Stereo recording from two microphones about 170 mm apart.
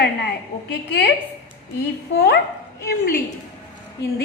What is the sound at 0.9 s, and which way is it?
Speech, 90° left.